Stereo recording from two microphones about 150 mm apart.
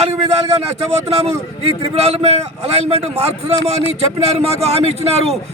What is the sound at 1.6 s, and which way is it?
Speech, 45° right (ahead or behind).